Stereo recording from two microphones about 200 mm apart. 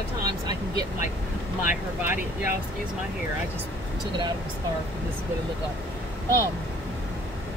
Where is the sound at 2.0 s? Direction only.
10° right (ahead or behind).